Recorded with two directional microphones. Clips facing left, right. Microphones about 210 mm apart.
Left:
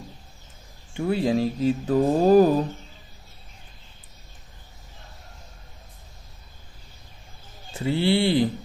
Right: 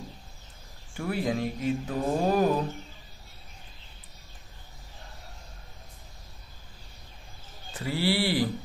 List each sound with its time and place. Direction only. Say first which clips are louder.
0.9 s speech: left 6 dB; 25° left (ahead or behind)
7.7 s a man's voice: left 5 dB; 25° left (ahead or behind)